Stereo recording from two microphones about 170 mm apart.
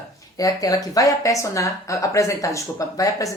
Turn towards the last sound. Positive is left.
turn(degrees=20)  # may be behind; listen again after turning